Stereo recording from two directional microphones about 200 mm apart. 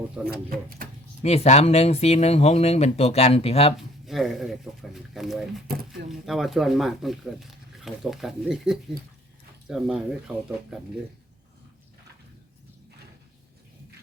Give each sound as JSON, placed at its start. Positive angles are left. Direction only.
{"t": 0.2, "sound": "speech", "side_deg": -5}
{"t": 0.5, "sound": "speech", "side_deg": -45}
{"t": 1.2, "sound": "speech", "side_deg": 30}
{"t": 3.8, "sound": "speech", "side_deg": 0}